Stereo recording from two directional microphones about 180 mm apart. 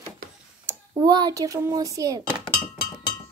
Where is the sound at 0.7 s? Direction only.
20° right (ahead or behind).